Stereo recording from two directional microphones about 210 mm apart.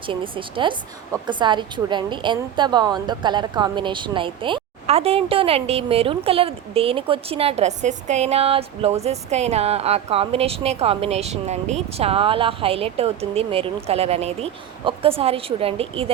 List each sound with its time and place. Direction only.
0.0 s a woman's voice: 25° right (ahead or behind)